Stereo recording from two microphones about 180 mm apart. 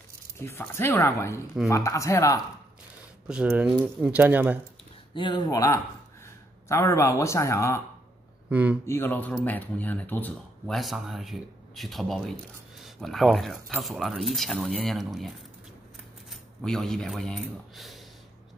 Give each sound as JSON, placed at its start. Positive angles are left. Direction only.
{"t": 0.4, "sound": "speech", "side_deg": 15}
{"t": 3.3, "sound": "speech", "side_deg": -5}
{"t": 5.1, "sound": "speech", "side_deg": 25}
{"t": 8.5, "sound": "speech", "side_deg": -10}
{"t": 8.8, "sound": "speech", "side_deg": 15}
{"t": 10.8, "sound": "speech", "side_deg": 0}